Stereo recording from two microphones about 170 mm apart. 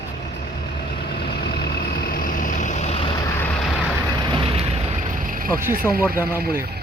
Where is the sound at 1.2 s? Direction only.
70° left (ahead or behind); by 3.5 s 20° left (ahead or behind).